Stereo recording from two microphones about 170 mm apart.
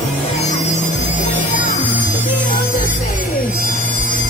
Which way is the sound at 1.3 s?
45° left (ahead or behind).